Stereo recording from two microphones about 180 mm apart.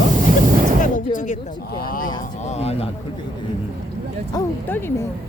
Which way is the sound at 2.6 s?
35° left (ahead or behind).